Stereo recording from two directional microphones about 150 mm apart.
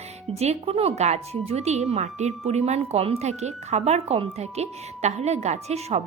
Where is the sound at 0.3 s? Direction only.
40° right (ahead or behind).